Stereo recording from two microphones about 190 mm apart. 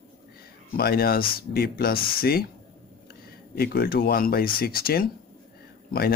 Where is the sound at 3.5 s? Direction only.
55° left (ahead or behind).